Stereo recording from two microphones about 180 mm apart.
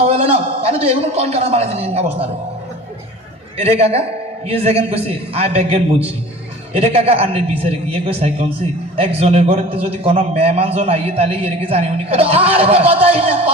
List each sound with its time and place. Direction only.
0.0 s a man's voice: 35° right (ahead or behind)
3.6 s a man's voice: 35° right (ahead or behind)